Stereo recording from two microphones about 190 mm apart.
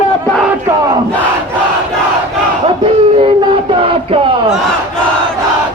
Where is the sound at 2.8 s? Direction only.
30° right (ahead or behind).